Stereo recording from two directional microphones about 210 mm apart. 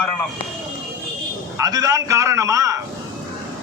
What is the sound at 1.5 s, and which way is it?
A man's voice, 15° right (ahead or behind).